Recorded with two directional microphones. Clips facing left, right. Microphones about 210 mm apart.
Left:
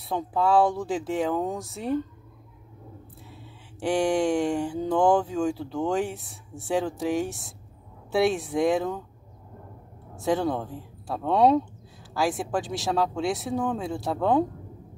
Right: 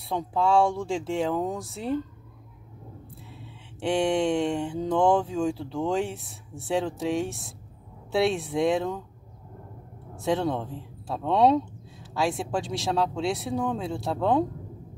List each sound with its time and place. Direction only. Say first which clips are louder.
0.1 s speech: left 1 dB; centre (ahead or behind)
3.9 s a sound: left 1 dB; 25° right (ahead or behind)
5.6 s speech: left 1 dB; centre (ahead or behind)
10.2 s speech: left 1 dB; centre (ahead or behind)